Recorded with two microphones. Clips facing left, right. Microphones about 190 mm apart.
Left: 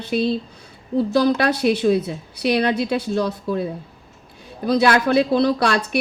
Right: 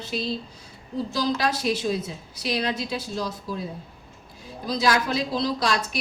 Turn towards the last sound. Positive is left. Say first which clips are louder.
# left 6 dB
turn(degrees=65)  # may be behind; listen again after turning